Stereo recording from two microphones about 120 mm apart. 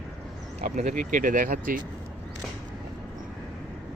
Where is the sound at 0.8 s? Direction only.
90° right.